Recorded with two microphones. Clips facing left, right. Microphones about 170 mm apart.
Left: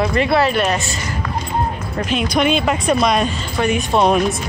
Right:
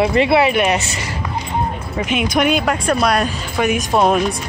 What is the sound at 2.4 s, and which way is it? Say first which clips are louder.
Speech: even; 5° right (ahead or behind).